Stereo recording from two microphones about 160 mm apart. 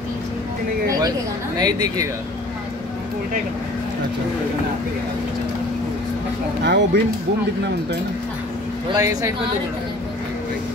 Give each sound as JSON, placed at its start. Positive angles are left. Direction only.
{"t": 1.6, "sound": "speech", "side_deg": -25}
{"t": 6.6, "sound": "speech", "side_deg": -90}
{"t": 8.9, "sound": "speech", "side_deg": -20}